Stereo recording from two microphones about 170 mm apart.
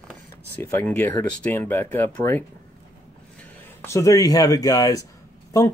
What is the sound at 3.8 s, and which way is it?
Speech, 15° left (ahead or behind).